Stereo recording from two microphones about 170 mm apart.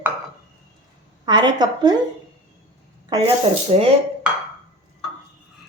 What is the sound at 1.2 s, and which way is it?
Speech, 25° right (ahead or behind).